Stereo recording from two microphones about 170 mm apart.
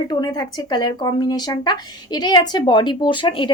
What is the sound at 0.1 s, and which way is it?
Speech, 25° left (ahead or behind).